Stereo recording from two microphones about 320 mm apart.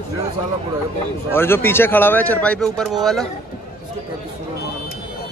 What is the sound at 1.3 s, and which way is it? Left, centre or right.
Speech, centre.